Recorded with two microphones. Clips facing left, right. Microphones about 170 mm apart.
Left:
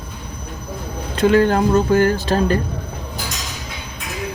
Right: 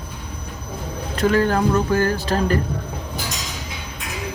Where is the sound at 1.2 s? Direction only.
25° left (ahead or behind).